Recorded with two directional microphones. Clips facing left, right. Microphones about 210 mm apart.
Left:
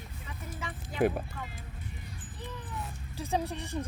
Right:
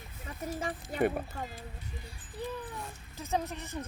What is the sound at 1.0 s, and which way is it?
Speech, centre (ahead or behind).